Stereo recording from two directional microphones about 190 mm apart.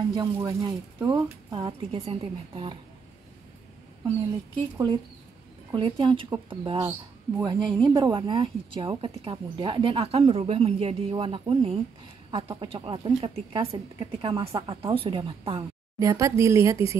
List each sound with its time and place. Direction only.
0.1 s speech: 25° right (ahead or behind)
5.7 s speech: 25° right (ahead or behind)
16.0 s a woman's voice: 15° right (ahead or behind)